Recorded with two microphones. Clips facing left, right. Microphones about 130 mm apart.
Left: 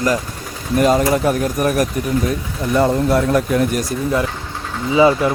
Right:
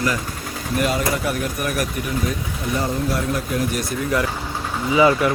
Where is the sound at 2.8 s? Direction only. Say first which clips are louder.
Left 9 dB; 65° left (ahead or behind).